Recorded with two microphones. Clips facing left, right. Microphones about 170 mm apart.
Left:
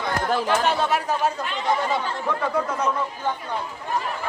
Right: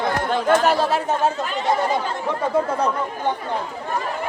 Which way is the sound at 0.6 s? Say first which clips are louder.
Right 3 dB; 35° right (ahead or behind).